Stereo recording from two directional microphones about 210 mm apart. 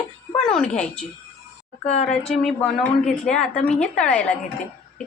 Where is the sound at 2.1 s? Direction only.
Centre (ahead or behind).